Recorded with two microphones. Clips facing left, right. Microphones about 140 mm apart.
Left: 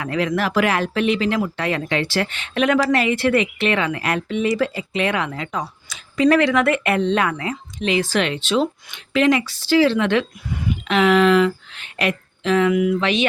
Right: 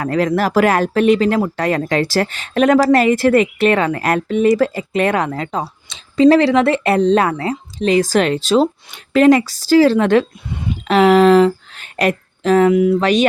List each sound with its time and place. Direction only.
0.0 s speech: 40° right (ahead or behind)